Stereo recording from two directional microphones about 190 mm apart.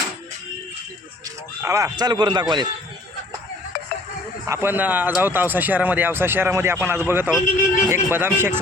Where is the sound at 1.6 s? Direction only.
15° right (ahead or behind).